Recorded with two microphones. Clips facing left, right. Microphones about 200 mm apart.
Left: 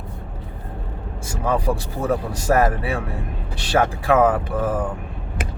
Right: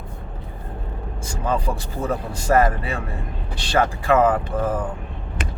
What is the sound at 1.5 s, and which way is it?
Speech, 65° left (ahead or behind).